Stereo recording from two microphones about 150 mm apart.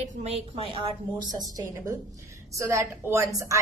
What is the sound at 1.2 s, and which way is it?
A woman's voice, 20° right (ahead or behind).